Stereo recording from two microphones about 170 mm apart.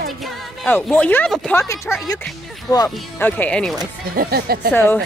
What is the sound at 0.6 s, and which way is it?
Speech, 10° left (ahead or behind).